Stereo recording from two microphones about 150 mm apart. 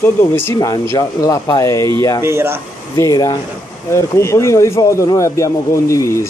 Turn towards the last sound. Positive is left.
turn(degrees=20)  # may be behind; listen again after turning